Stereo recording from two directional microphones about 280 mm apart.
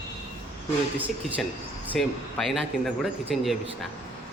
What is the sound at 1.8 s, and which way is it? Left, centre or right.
Speech, centre.